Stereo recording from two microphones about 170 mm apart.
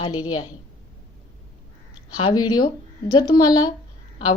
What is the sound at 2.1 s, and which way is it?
Speech, 25° left (ahead or behind).